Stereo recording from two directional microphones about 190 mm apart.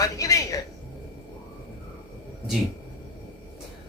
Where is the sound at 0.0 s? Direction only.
15° left (ahead or behind).